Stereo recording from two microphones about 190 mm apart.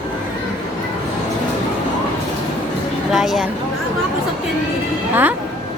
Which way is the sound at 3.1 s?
Centre (ahead or behind).